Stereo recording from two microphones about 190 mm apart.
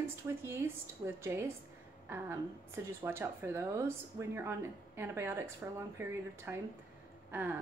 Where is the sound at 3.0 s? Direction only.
10° right (ahead or behind).